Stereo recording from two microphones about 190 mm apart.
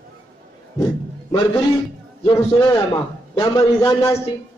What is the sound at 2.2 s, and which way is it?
A man's voice, 20° left (ahead or behind).